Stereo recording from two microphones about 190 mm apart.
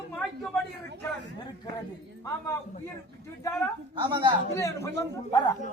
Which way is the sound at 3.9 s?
25° right (ahead or behind).